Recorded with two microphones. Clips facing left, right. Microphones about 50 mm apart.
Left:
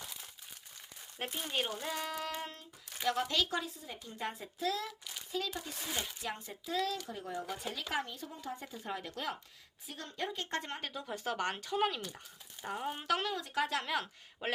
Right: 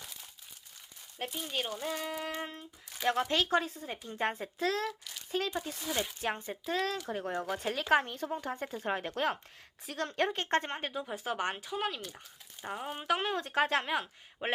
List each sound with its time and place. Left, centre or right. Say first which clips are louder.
1.3 s speech: right 1 dB; centre
1.5 s speech: right 1 dB; centre
2.0 s speech: right 2 dB; centre
2.3 s a sound: right 3 dB; right
3.0 s a child's voice: right 3 dB; right
9.8 s a woman's voice: right 8 dB; right
10.4 s speech: right 7 dB; right
10.8 s a sound: right 5 dB; right
11.0 s speech: left 1 dB; centre
11.5 s speech: left 2 dB; centre
13.2 s speech: right 4 dB; right
14.0 s speech: right 2 dB; centre